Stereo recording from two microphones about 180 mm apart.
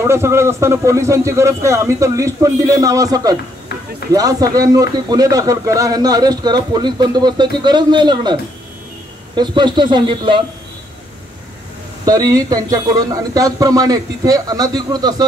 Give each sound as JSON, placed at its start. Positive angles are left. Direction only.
{"t": 0.0, "sound": "speech", "side_deg": -15}
{"t": 12.1, "sound": "speech", "side_deg": -20}